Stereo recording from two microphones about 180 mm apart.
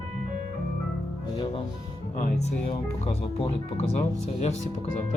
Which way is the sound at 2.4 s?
35° left (ahead or behind).